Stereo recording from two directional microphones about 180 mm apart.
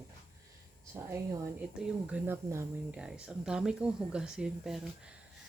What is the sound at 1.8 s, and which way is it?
Speech, 10° right (ahead or behind).